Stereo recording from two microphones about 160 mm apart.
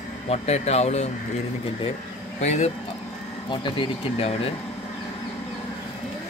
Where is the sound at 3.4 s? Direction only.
30° left (ahead or behind).